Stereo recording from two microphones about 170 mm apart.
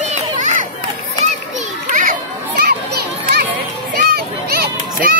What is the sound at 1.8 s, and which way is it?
Children playing, 50° right (ahead or behind).